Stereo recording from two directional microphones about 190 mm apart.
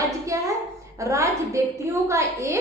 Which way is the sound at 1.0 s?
15° right (ahead or behind).